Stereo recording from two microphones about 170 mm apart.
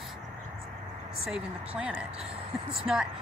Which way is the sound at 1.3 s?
5° right (ahead or behind).